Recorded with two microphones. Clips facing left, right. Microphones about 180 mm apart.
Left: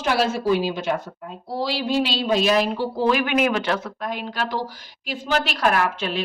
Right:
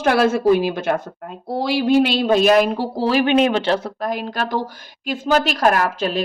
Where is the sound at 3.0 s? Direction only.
30° right (ahead or behind).